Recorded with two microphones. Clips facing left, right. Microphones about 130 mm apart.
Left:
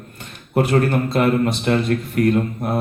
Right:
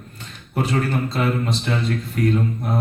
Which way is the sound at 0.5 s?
55° left (ahead or behind).